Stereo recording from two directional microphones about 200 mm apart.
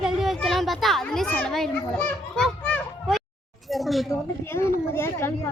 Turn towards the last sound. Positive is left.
turn(degrees=10)  # may be behind; listen again after turning